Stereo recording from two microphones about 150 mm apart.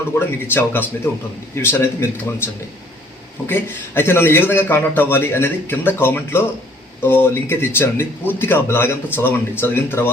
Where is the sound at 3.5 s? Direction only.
15° left (ahead or behind).